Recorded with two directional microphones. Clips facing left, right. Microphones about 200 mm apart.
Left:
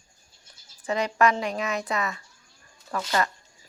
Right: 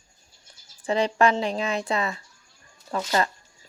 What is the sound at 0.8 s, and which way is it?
Speech, 30° right (ahead or behind).